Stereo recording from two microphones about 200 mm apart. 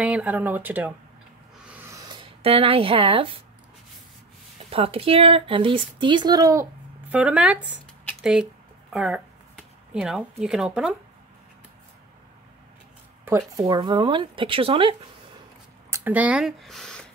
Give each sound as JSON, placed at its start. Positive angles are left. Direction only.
{"t": 0.0, "sound": "speech", "side_deg": -5}
{"t": 1.7, "sound": "a sound", "side_deg": -15}
{"t": 4.6, "sound": "speech", "side_deg": -30}
{"t": 13.6, "sound": "speech", "side_deg": -20}
{"t": 15.9, "sound": "speech", "side_deg": -10}